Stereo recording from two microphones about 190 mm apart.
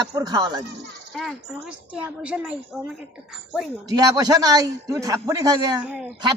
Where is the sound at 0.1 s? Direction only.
20° right (ahead or behind).